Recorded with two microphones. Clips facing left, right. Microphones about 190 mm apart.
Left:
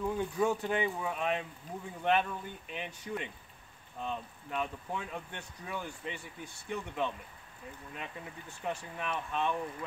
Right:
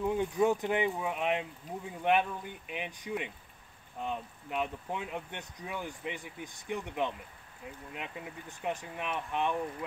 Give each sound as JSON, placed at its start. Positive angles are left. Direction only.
{"t": 0.0, "sound": "speech", "side_deg": -15}